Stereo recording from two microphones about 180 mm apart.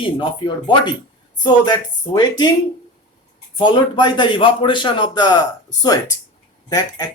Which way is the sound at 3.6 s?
25° left (ahead or behind).